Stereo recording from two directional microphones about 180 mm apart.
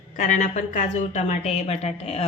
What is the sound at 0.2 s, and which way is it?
Speech, 40° left (ahead or behind).